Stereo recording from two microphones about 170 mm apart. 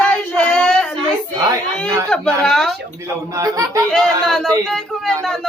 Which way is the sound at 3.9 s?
Centre (ahead or behind).